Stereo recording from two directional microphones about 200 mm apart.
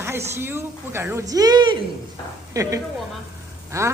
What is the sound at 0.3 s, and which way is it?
Speech, 10° right (ahead or behind).